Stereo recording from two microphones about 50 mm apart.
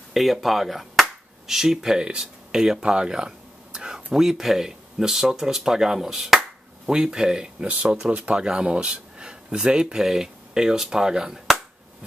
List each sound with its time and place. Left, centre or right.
0.1 s speech: centre